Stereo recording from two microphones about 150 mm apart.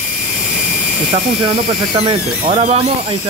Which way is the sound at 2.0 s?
35° right (ahead or behind).